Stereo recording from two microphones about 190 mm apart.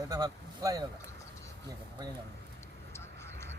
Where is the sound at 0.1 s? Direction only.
20° right (ahead or behind).